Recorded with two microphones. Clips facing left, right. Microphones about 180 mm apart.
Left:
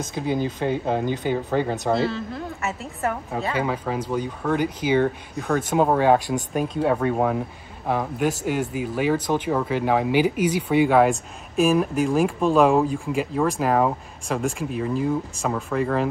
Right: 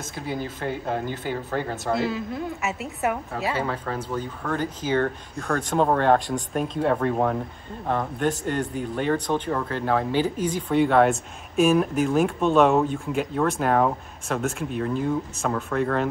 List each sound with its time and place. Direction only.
0.0 s speech: 20° left (ahead or behind)
2.0 s speech: centre (ahead or behind)
3.5 s speech: 10° left (ahead or behind)